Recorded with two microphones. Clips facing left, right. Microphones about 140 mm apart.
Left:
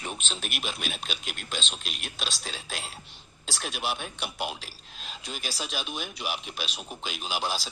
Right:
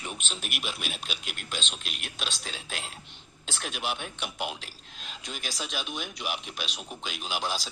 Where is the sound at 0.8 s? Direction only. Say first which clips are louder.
Left 2 dB; 10° right (ahead or behind).